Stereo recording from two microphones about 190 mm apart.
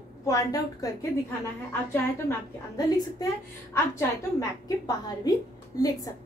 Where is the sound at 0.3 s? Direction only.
20° left (ahead or behind).